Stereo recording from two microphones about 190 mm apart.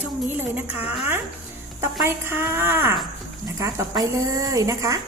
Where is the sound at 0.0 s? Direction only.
10° right (ahead or behind).